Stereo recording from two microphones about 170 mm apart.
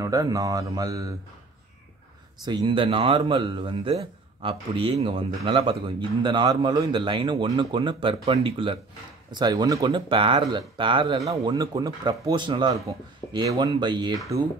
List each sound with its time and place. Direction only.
0.0 s speech: 20° right (ahead or behind)
2.4 s speech: 25° right (ahead or behind)